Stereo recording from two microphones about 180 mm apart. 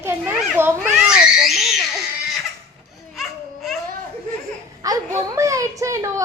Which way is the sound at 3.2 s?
Centre (ahead or behind).